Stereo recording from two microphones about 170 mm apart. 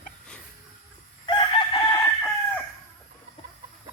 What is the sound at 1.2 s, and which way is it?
Chicken, 30° left (ahead or behind).